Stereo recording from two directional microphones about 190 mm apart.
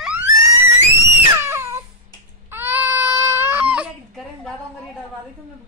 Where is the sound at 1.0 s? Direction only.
15° right (ahead or behind).